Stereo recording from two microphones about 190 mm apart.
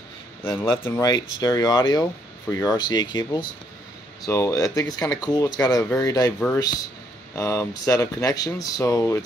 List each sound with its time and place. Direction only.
0.8 s speech: 20° left (ahead or behind)